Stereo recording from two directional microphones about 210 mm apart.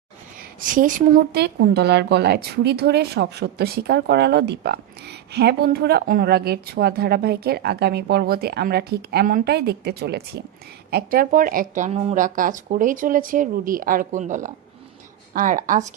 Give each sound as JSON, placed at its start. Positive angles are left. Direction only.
{"t": 0.6, "sound": "a woman's voice", "side_deg": -40}